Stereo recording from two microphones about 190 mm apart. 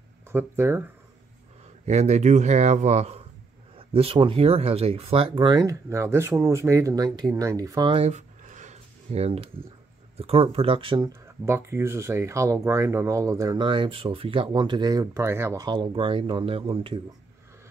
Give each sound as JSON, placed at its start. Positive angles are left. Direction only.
{"t": 0.3, "sound": "speech", "side_deg": -10}
{"t": 1.9, "sound": "speech", "side_deg": -35}
{"t": 11.4, "sound": "speech", "side_deg": -15}